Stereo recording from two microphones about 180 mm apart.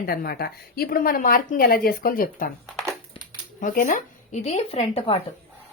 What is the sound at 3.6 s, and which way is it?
Speech, 50° left (ahead or behind).